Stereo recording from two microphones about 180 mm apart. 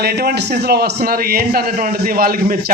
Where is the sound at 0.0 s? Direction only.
60° right (ahead or behind).